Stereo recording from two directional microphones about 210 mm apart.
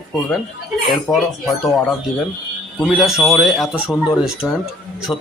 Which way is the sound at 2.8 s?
Centre (ahead or behind).